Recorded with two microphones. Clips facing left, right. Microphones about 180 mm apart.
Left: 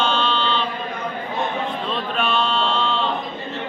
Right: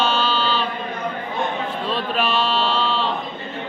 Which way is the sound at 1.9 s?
5° right (ahead or behind).